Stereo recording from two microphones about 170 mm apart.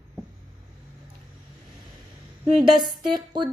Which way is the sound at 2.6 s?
25° right (ahead or behind).